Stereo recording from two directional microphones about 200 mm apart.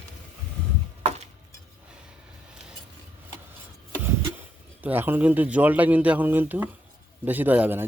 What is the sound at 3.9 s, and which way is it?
A man's voice, 10° right (ahead or behind).